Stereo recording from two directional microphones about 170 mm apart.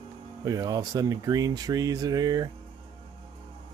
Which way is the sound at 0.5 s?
20° right (ahead or behind).